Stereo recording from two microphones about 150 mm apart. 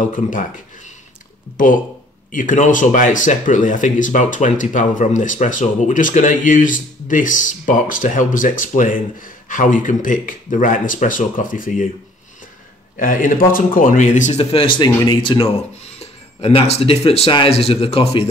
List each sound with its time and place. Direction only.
0.1 s speech: 60° left (ahead or behind)
2.3 s speech: 55° left (ahead or behind)
12.9 s speech: 65° left (ahead or behind)
14.4 s speech: 40° left (ahead or behind)
16.0 s speech: 40° left (ahead or behind)